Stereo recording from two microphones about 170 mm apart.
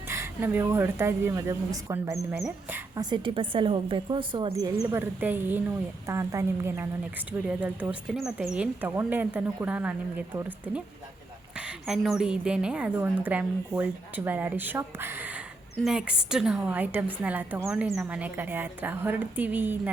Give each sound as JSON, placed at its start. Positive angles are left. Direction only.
{"t": 0.1, "sound": "a woman's voice", "side_deg": -15}
{"t": 3.0, "sound": "a woman's voice", "side_deg": -30}